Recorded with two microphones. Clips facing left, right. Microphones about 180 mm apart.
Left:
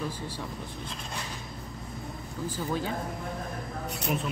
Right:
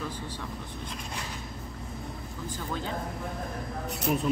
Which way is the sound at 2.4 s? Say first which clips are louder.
Left 4 dB; 10° left (ahead or behind).